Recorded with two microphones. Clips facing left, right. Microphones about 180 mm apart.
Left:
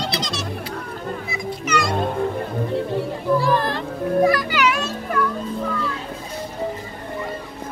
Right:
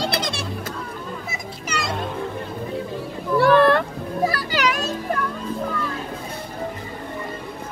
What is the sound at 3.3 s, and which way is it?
Music, 65° right (ahead or behind).